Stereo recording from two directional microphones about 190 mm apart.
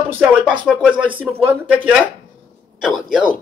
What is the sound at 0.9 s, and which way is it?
Speech, 25° right (ahead or behind).